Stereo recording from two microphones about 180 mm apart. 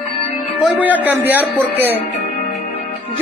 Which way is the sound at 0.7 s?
10° right (ahead or behind).